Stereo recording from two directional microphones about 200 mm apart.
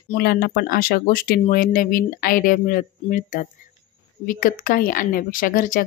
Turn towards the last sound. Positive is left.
turn(degrees=45)  # may be behind; listen again after turning